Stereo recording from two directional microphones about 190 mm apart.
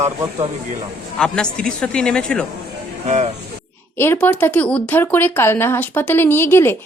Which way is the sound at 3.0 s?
35° right (ahead or behind).